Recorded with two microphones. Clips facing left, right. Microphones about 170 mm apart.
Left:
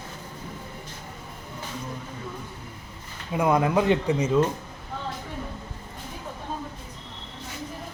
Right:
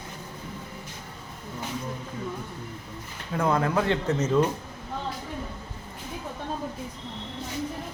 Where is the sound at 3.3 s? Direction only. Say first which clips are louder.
Left 3 dB; 15° left (ahead or behind).